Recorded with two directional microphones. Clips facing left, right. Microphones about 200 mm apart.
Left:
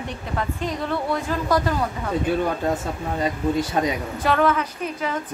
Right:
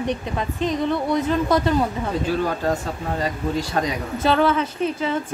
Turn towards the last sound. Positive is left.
turn(degrees=-30)  # may be behind; listen again after turning